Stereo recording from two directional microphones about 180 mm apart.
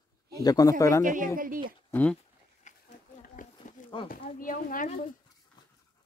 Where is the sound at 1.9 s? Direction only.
10° left (ahead or behind).